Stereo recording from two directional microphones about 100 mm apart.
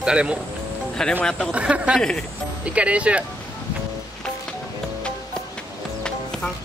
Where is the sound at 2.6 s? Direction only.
10° right (ahead or behind).